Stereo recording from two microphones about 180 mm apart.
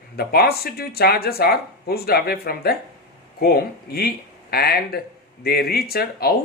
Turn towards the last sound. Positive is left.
turn(degrees=60)  # may be behind; listen again after turning